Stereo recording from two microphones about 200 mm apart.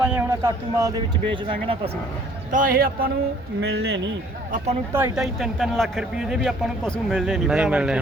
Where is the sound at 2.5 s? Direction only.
45° right (ahead or behind); by 4.1 s 60° right (ahead or behind).